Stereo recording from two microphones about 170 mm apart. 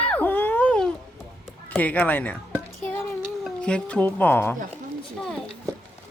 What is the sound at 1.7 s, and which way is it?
Speech, 10° left (ahead or behind).